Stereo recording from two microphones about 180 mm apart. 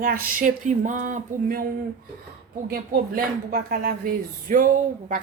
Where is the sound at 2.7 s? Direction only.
55° right (ahead or behind).